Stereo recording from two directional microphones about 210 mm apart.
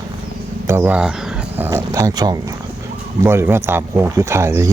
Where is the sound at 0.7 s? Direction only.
10° right (ahead or behind).